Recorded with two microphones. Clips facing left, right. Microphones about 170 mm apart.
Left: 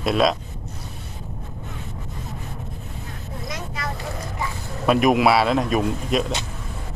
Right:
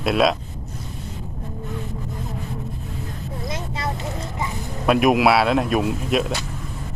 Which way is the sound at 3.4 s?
25° right (ahead or behind).